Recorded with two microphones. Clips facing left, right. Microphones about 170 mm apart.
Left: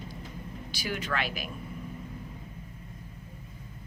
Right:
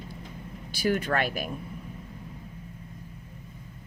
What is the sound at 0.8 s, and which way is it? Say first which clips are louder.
Speech: right 7 dB; 50° right (ahead or behind).